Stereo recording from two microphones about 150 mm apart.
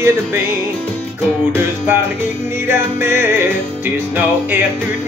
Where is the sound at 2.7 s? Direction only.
15° right (ahead or behind).